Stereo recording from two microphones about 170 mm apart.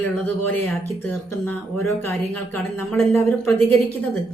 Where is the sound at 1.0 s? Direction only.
10° left (ahead or behind).